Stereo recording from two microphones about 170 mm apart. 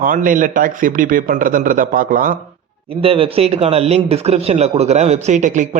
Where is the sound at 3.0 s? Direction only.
35° right (ahead or behind).